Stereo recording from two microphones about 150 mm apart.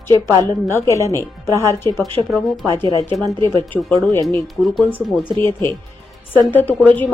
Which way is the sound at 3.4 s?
20° left (ahead or behind).